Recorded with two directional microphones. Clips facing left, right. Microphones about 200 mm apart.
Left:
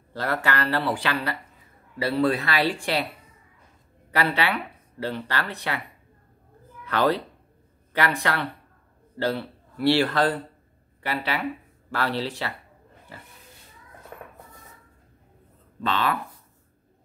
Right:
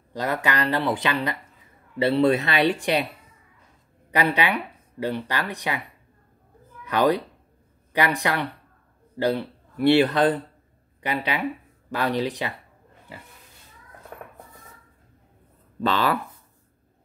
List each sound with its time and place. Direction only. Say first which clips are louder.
0.1 s speech: right 1 dB; 15° right (ahead or behind)
4.1 s speech: right 2 dB; 15° right (ahead or behind)
6.9 s a man's voice: right 2 dB; 15° right (ahead or behind)
15.8 s speech: right 3 dB; 35° right (ahead or behind)